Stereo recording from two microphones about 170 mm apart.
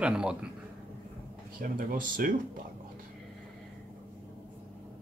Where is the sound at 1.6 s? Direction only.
55° right (ahead or behind).